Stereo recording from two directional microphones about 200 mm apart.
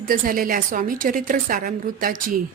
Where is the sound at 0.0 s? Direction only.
45° right (ahead or behind).